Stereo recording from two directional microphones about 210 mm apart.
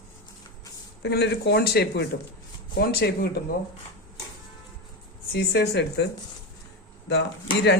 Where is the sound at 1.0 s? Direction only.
55° left (ahead or behind).